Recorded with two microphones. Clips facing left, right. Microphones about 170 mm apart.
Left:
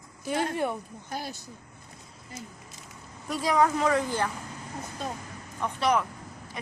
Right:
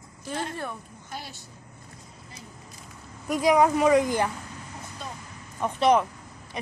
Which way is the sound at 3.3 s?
15° right (ahead or behind).